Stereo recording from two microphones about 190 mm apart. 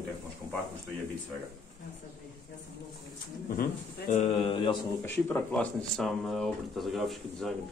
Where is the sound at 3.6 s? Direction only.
40° left (ahead or behind); by 4.8 s 25° left (ahead or behind).